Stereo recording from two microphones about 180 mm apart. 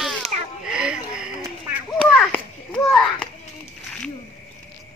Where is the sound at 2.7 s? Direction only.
5° left (ahead or behind).